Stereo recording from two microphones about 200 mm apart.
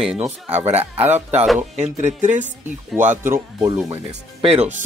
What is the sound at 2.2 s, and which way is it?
Speech, 35° right (ahead or behind).